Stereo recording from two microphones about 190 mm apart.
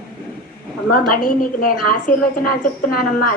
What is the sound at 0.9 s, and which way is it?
A woman's voice, 50° left (ahead or behind).